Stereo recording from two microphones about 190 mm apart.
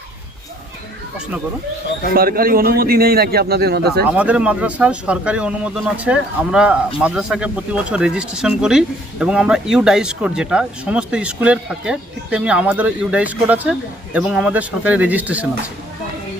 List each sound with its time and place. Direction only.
2.1 s a man's voice: 50° right (ahead or behind)
4.1 s speech: 5° right (ahead or behind)